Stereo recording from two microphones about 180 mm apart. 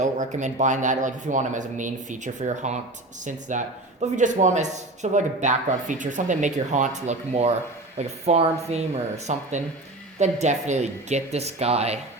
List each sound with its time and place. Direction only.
0.0 s speech: 40° right (ahead or behind)